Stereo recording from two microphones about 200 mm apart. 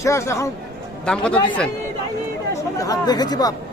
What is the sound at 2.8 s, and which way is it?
Speech, 20° left (ahead or behind).